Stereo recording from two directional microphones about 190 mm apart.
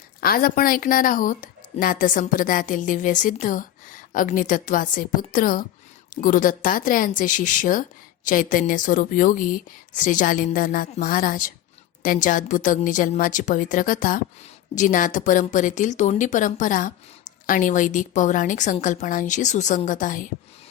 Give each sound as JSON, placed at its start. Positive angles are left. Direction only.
{"t": 0.2, "sound": "a woman's voice", "side_deg": 50}